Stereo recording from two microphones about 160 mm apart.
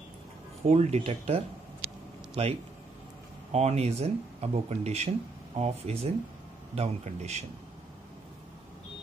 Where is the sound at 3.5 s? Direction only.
40° right (ahead or behind).